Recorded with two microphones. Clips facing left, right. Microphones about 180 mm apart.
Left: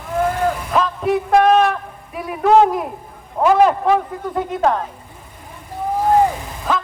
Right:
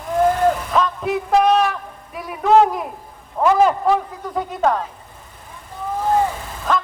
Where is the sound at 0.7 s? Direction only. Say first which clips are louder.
Left 2 dB; centre (ahead or behind).